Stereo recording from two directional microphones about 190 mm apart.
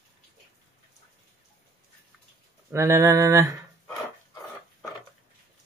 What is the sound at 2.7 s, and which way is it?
Mantra, 15° right (ahead or behind).